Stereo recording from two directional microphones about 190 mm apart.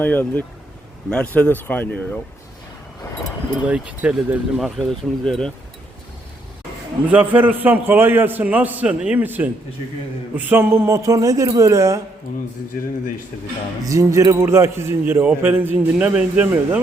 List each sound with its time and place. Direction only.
0.0 s speech: 10° left (ahead or behind)
3.7 s speech: 5° right (ahead or behind)
7.1 s a man's voice: 10° right (ahead or behind)
13.8 s a man's voice: 15° right (ahead or behind)